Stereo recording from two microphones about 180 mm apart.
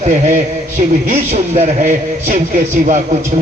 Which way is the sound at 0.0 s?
40° right (ahead or behind).